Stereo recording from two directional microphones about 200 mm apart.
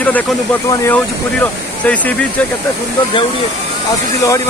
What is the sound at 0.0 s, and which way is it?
Speech, 10° left (ahead or behind).